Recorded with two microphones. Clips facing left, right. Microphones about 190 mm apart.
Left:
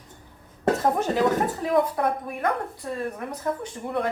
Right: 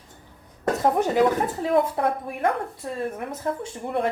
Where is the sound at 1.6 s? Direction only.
25° right (ahead or behind).